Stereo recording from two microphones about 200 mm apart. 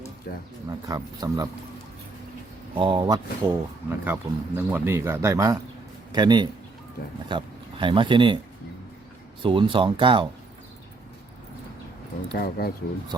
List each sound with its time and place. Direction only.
0.3 s speech: 50° left (ahead or behind)
0.9 s speech: 20° right (ahead or behind)
2.7 s speech: 25° right (ahead or behind)
9.4 s speech: 25° right (ahead or behind)
12.4 s speech: 50° left (ahead or behind)